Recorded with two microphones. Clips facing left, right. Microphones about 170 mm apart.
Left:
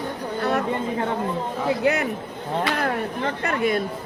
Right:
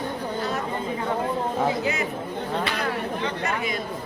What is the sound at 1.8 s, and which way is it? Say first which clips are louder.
Speech: left 5 dB; 60° left (ahead or behind).